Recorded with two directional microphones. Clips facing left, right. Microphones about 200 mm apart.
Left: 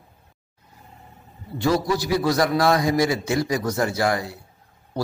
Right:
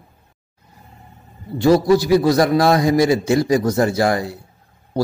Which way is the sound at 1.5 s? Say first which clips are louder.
Right 8 dB; 30° right (ahead or behind).